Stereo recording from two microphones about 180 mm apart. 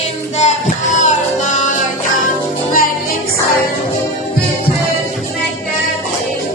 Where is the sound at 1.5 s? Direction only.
40° left (ahead or behind).